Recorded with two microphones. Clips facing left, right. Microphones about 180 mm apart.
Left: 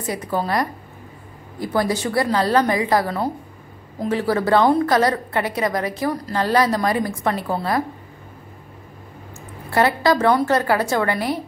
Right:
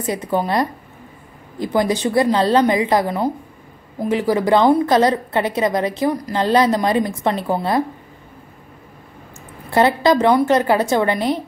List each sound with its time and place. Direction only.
0.0 s a woman's voice: 20° right (ahead or behind)
9.7 s a woman's voice: 20° right (ahead or behind)